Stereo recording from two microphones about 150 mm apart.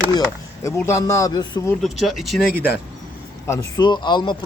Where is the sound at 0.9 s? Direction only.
20° left (ahead or behind).